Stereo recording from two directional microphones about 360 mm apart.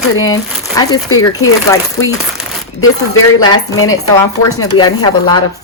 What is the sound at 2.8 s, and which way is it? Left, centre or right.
Speech, left.